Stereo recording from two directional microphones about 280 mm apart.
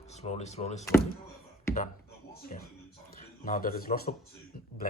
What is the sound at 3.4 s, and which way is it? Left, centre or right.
Speech, left.